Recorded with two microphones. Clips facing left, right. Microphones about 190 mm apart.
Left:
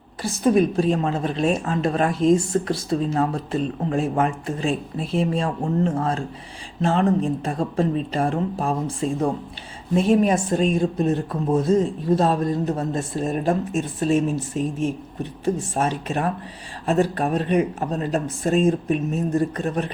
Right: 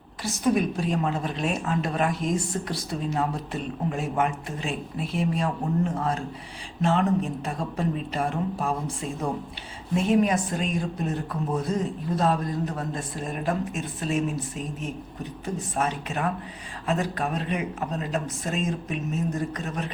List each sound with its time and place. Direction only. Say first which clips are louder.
0.2 s a woman's voice: left 5 dB; 30° left (ahead or behind)